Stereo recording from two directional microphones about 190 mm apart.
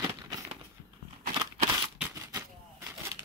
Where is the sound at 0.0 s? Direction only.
15° right (ahead or behind).